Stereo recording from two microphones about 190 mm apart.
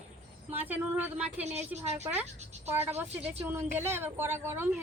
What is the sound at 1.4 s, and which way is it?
Speech, 35° right (ahead or behind).